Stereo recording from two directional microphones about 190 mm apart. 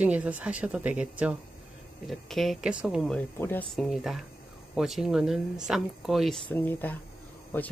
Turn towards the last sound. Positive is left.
turn(degrees=10)  # may be behind; listen again after turning